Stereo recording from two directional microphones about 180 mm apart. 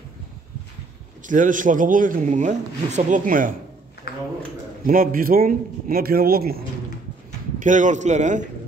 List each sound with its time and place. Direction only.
1.2 s speech: 45° right (ahead or behind)
4.1 s a sound: 60° left (ahead or behind)
4.8 s speech: 50° right (ahead or behind)
7.5 s speech: 45° right (ahead or behind)